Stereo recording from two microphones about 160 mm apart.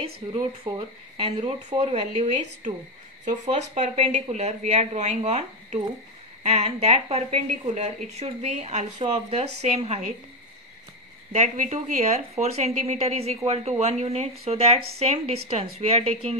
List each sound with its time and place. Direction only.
0.2 s speech: 30° right (ahead or behind)
11.3 s speech: 50° right (ahead or behind)